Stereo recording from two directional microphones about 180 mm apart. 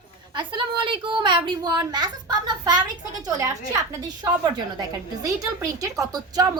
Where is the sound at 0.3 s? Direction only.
25° right (ahead or behind).